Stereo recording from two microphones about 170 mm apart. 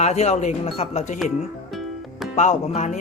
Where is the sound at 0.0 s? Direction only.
40° left (ahead or behind).